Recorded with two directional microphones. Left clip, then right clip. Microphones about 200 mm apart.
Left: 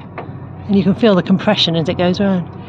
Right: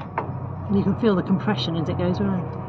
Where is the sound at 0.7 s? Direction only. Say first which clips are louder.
Left 9 dB; 65° left (ahead or behind).